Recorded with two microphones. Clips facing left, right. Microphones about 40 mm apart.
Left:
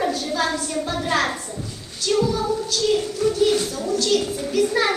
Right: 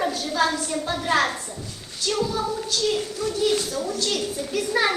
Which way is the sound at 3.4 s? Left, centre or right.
Centre.